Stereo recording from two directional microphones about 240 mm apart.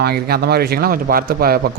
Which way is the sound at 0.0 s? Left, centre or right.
Right.